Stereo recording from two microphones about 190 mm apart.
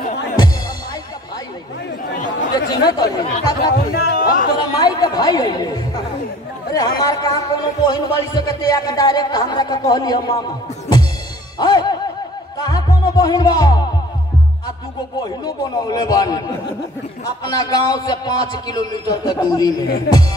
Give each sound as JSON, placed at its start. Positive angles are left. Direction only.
{"t": 2.5, "sound": "a man's voice", "side_deg": 20}
{"t": 3.7, "sound": "speech", "side_deg": 55}
{"t": 4.7, "sound": "a man's voice", "side_deg": 20}
{"t": 11.5, "sound": "music", "side_deg": 20}
{"t": 15.2, "sound": "a man's voice", "side_deg": 20}